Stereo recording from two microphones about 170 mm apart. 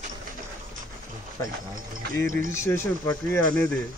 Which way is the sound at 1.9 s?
55° right (ahead or behind).